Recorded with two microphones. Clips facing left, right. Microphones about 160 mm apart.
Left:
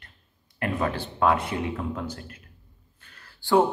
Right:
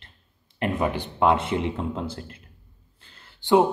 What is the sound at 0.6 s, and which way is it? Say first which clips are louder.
A man's voice: right 2 dB; 20° right (ahead or behind).